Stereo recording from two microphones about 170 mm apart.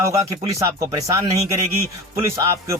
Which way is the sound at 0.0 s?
15° right (ahead or behind).